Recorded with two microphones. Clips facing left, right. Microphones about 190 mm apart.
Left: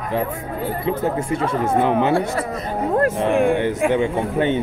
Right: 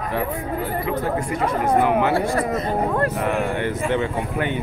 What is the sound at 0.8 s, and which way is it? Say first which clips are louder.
Speech: left 5 dB; 30° left (ahead or behind).